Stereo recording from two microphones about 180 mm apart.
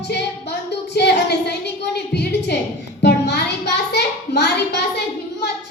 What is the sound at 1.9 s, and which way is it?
Speech, 65° left (ahead or behind).